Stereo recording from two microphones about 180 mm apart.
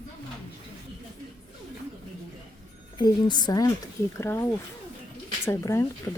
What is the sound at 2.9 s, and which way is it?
A woman's voice, 25° left (ahead or behind).